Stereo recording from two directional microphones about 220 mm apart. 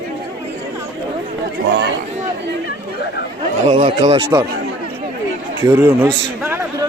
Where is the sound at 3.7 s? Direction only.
25° right (ahead or behind).